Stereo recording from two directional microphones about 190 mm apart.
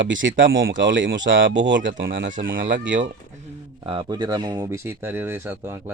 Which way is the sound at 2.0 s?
50° right (ahead or behind).